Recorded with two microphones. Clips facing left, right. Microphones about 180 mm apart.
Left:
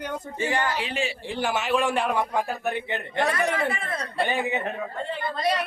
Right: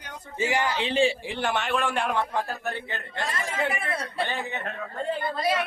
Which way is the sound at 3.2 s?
65° left (ahead or behind).